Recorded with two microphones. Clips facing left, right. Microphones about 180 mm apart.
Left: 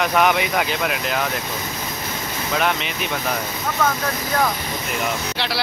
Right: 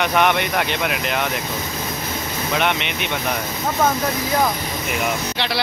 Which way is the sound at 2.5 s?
Centre (ahead or behind).